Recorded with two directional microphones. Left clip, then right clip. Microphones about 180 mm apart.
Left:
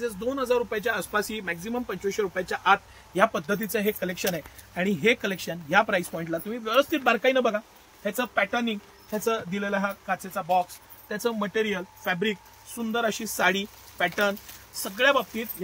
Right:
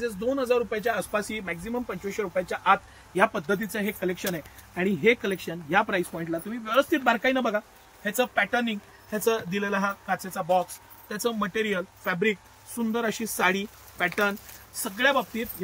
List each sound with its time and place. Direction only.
0.0 s speech: 65° left (ahead or behind); by 7.6 s 35° left (ahead or behind)
8.0 s speech: 15° left (ahead or behind); by 15.4 s 35° left (ahead or behind)